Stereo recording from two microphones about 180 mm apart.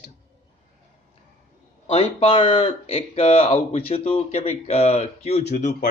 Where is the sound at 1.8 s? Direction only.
35° left (ahead or behind).